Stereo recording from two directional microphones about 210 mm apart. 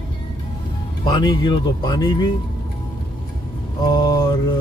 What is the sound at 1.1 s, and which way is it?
Speech, 20° left (ahead or behind).